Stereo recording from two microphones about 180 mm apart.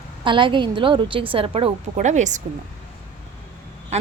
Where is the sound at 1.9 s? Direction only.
40° right (ahead or behind).